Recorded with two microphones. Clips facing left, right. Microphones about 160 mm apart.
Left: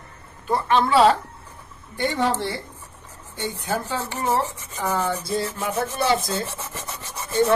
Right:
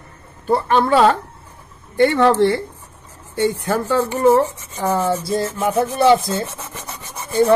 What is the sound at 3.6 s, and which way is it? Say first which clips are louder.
Speech: right 8 dB; 55° right (ahead or behind).